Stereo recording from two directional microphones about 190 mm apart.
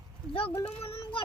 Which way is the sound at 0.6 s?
30° left (ahead or behind).